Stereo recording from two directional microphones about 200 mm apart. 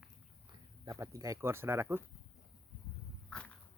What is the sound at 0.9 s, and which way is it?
Speech, 15° right (ahead or behind).